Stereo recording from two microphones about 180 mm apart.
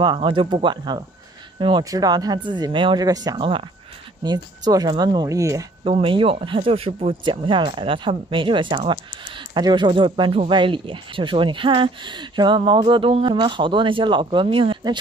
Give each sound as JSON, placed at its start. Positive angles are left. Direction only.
{"t": 0.0, "sound": "speech", "side_deg": -25}
{"t": 5.9, "sound": "speech", "side_deg": -30}